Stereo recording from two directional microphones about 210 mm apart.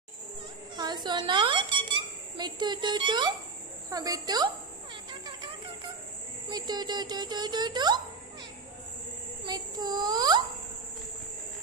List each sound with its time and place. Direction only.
0.8 s a child's voice: 20° right (ahead or behind)
6.5 s a woman's voice: 20° right (ahead or behind)
9.5 s a woman's voice: 20° right (ahead or behind)